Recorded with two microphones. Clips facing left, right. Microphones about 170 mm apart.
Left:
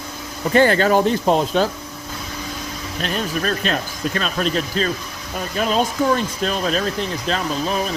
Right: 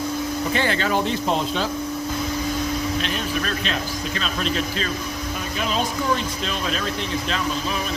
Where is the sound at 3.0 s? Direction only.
40° left (ahead or behind).